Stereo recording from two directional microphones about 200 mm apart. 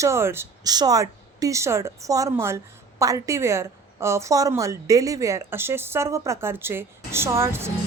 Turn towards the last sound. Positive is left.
turn(degrees=-15)  # may be behind; listen again after turning